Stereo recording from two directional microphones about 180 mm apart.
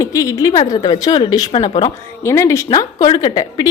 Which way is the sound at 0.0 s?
20° left (ahead or behind).